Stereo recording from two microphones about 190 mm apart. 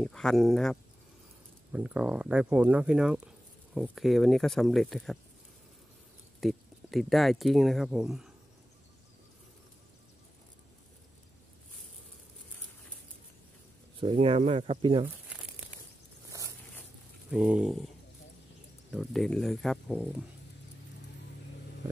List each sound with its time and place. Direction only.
0.0 s speech: 5° left (ahead or behind)
6.4 s speech: centre (ahead or behind)
14.1 s speech: 30° right (ahead or behind)
15.0 s crumpling: 5° right (ahead or behind)
16.3 s a sound: 15° right (ahead or behind)
17.3 s speech: 5° right (ahead or behind)
18.9 s speech: centre (ahead or behind)